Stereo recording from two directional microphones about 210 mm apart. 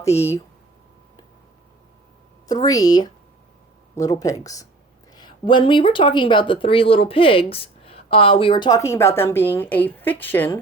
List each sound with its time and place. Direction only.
0.0 s speech: 10° left (ahead or behind)
2.5 s speech: 15° left (ahead or behind)